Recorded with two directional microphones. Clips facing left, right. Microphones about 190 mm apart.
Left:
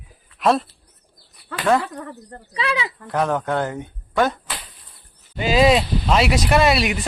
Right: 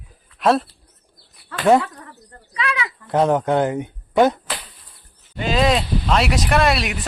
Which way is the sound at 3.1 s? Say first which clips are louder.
Right 4 dB; 20° right (ahead or behind).